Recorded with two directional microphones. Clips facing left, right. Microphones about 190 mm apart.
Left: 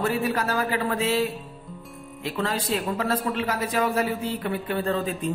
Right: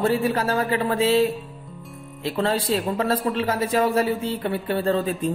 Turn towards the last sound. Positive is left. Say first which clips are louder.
# right 3 dB
turn(degrees=-30)  # may be behind; listen again after turning